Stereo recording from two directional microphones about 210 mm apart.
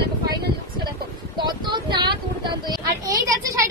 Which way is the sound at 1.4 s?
20° right (ahead or behind).